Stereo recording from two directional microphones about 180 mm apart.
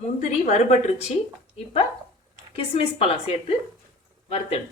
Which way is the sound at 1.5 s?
35° left (ahead or behind).